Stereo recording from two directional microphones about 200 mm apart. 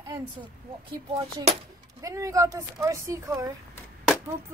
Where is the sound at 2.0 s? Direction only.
15° right (ahead or behind).